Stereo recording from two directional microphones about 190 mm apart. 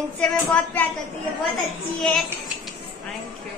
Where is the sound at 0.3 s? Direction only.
5° left (ahead or behind).